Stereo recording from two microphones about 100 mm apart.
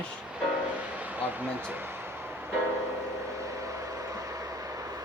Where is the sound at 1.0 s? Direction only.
15° right (ahead or behind).